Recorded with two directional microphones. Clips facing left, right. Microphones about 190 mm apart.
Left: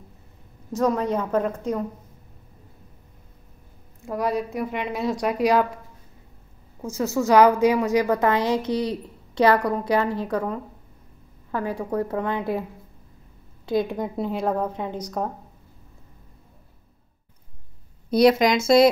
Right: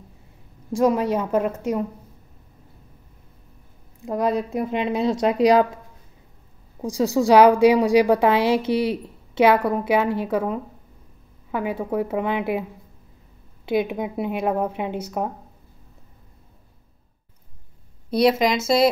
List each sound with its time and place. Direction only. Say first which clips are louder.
0.7 s a woman's voice: right 3 dB; 10° right (ahead or behind)
4.0 s a woman's voice: right 3 dB; 20° right (ahead or behind)
6.8 s a woman's voice: right 4 dB; 15° right (ahead or behind)
13.7 s a woman's voice: right 1 dB; 5° right (ahead or behind)
18.1 s a woman's voice: left 1 dB; centre (ahead or behind)